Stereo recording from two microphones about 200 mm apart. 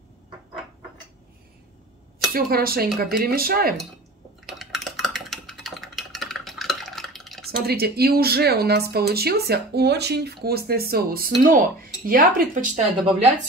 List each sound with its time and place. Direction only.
2.3 s speech: 50° right (ahead or behind)
4.5 s a sound: centre (ahead or behind)
7.6 s speech: 50° right (ahead or behind)